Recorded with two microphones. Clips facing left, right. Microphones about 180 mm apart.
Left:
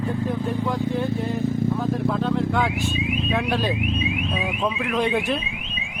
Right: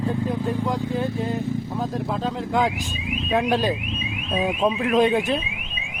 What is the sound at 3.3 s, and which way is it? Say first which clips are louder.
Speech: right 5 dB; 40° right (ahead or behind).